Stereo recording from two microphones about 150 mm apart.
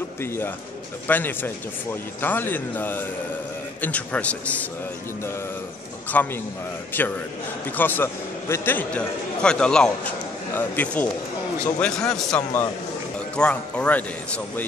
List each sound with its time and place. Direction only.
1.0 s a man's voice: 15° left (ahead or behind)
6.1 s a man's voice: 10° left (ahead or behind)